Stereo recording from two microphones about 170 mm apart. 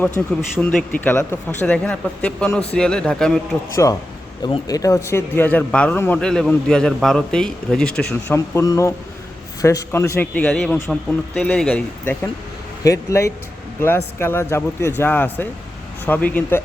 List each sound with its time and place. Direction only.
0.2 s a man's voice: 10° left (ahead or behind)
3.8 s a man's voice: 20° left (ahead or behind)